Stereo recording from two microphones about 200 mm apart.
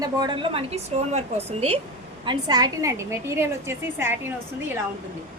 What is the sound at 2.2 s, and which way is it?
A woman's voice, 20° right (ahead or behind).